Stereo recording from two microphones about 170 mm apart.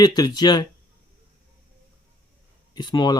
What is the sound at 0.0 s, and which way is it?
Speech, 25° left (ahead or behind).